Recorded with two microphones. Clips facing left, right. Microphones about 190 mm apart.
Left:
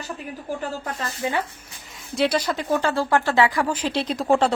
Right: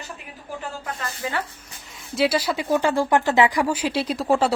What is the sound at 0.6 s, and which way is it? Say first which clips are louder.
Speech: left 3 dB; 30° left (ahead or behind).